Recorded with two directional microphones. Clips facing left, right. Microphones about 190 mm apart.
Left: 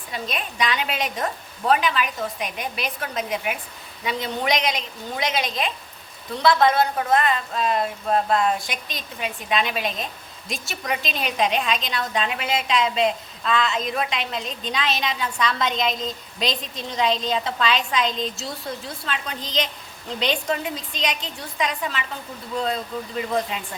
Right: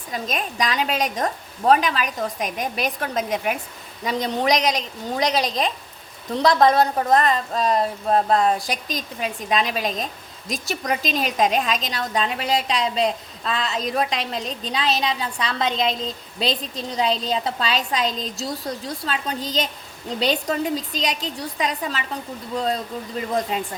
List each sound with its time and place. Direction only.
0.1 s a woman's voice: 40° right (ahead or behind)
23.5 s a woman's voice: 40° right (ahead or behind)